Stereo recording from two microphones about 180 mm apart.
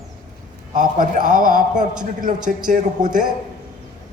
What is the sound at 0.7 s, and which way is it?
A man's voice, 50° right (ahead or behind).